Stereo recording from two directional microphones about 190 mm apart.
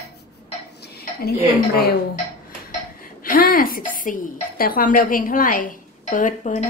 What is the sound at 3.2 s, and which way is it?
A woman's voice, 50° left (ahead or behind).